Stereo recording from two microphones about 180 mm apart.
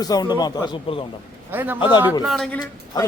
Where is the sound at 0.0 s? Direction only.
20° left (ahead or behind).